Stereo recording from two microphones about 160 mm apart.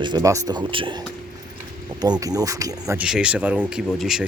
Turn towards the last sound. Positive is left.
turn(degrees=0)  # may be behind; listen again after turning